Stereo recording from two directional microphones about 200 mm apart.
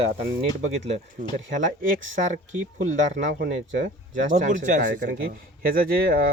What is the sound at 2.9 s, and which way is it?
Speech, 40° right (ahead or behind).